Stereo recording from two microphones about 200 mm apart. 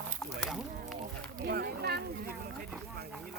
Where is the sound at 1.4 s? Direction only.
50° right (ahead or behind).